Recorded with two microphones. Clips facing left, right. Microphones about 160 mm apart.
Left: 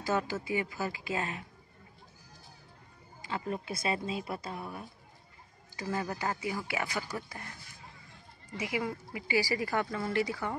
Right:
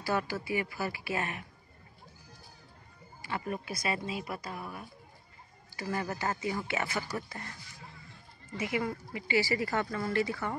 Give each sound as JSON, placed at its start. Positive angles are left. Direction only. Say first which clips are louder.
{"t": 0.0, "sound": "speech", "louder": "left 1 dB", "side_deg": 20}
{"t": 3.2, "sound": "speech", "louder": "even", "side_deg": 20}
{"t": 4.6, "sound": "speech", "louder": "left 1 dB", "side_deg": 0}
{"t": 5.8, "sound": "speech", "louder": "even", "side_deg": 20}
{"t": 8.5, "sound": "speech", "louder": "right 1 dB", "side_deg": 10}